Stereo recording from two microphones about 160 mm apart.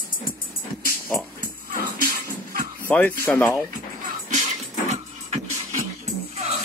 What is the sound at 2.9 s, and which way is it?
Speech, 10° left (ahead or behind).